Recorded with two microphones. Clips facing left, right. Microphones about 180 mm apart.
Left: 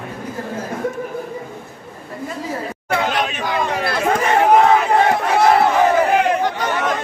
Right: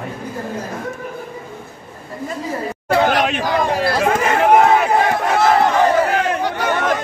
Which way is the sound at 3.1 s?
60° right (ahead or behind).